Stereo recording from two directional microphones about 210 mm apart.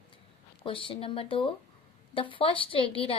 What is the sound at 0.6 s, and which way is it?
A woman's voice, 25° left (ahead or behind).